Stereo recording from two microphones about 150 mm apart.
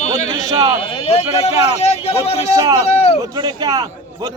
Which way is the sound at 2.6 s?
25° right (ahead or behind).